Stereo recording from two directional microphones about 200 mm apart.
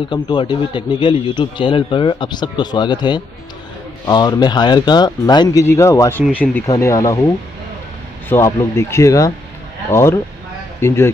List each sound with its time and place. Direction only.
0.1 s a man's voice: 25° left (ahead or behind); by 6.6 s 5° left (ahead or behind)
6.7 s speech: 15° left (ahead or behind)
8.3 s speech: 15° left (ahead or behind)